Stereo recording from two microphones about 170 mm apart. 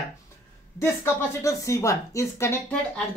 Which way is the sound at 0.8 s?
15° left (ahead or behind).